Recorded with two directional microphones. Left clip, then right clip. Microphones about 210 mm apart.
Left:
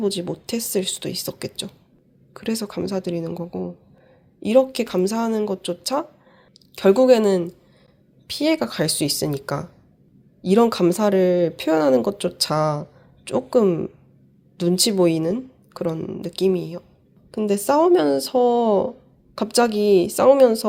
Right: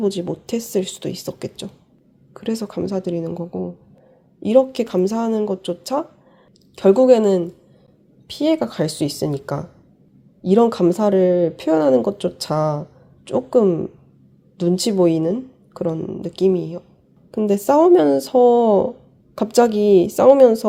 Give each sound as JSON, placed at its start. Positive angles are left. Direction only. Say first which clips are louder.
{"t": 0.0, "sound": "speech", "louder": "right 2 dB", "side_deg": -15}